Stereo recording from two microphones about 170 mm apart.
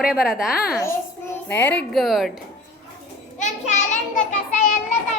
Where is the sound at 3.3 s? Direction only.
45° left (ahead or behind).